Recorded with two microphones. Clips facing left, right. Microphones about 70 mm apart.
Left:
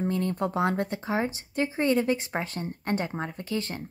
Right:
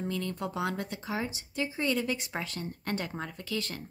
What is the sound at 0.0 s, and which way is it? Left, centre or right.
Speech, left.